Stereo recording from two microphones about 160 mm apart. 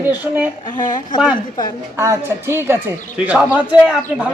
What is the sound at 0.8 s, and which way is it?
Speech, 50° left (ahead or behind).